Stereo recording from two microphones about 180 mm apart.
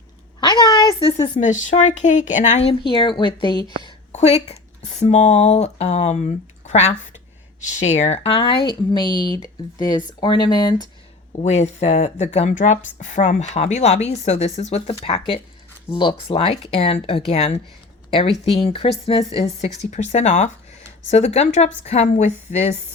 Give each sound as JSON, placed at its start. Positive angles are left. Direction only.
{"t": 0.3, "sound": "speech", "side_deg": 20}
{"t": 4.1, "sound": "speech", "side_deg": 35}
{"t": 11.4, "sound": "speech", "side_deg": 35}